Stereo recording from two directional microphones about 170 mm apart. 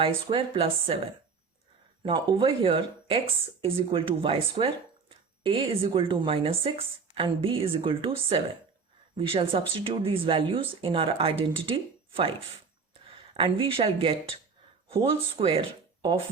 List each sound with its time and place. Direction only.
0.0 s speech: 30° right (ahead or behind)
2.0 s speech: 30° right (ahead or behind)
13.3 s speech: 30° right (ahead or behind)